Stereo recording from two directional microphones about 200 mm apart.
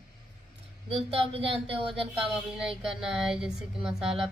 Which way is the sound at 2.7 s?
5° right (ahead or behind).